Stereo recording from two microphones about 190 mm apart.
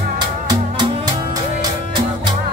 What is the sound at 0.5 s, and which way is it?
Music, 20° right (ahead or behind).